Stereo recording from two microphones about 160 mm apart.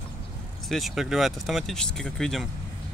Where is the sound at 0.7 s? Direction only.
Centre (ahead or behind).